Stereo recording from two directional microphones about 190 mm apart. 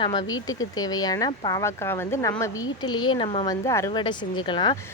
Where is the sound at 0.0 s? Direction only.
20° left (ahead or behind).